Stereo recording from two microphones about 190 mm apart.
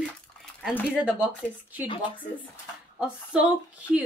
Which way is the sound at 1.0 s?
5° right (ahead or behind).